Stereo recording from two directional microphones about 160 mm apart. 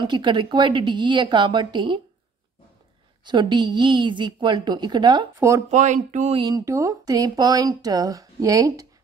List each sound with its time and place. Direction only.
0.0 s speech: 30° right (ahead or behind)
3.3 s speech: 30° right (ahead or behind)
5.7 s speech: 50° right (ahead or behind)
6.3 s speech: 25° right (ahead or behind)